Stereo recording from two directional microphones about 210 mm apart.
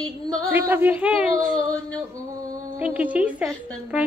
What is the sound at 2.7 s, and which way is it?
Child singing, 5° right (ahead or behind).